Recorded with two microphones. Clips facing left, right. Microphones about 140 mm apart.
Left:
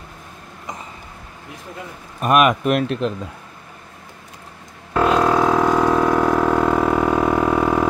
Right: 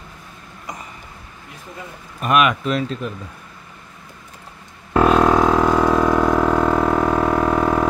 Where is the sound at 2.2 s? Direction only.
45° left (ahead or behind); by 3.1 s 70° left (ahead or behind).